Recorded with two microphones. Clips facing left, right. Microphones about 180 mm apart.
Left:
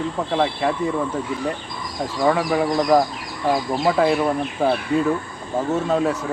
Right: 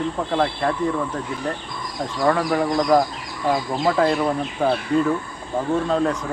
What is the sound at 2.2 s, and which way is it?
Speech, 5° left (ahead or behind).